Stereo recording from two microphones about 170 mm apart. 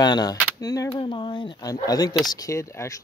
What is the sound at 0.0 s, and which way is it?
Speech, 25° left (ahead or behind).